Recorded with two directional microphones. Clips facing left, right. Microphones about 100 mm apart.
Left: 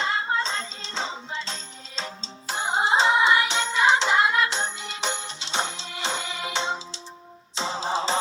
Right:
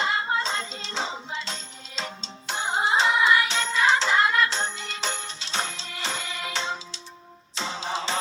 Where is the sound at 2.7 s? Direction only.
25° left (ahead or behind).